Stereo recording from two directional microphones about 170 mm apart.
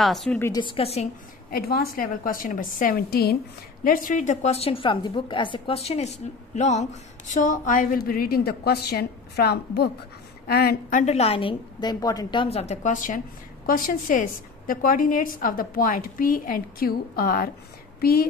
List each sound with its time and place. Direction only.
0.0 s a woman's voice: centre (ahead or behind)
0.4 s a woman's voice: 20° left (ahead or behind)
0.7 s a woman's voice: 35° left (ahead or behind)
1.5 s a woman's voice: 65° left (ahead or behind)
3.8 s a woman's voice: 55° left (ahead or behind)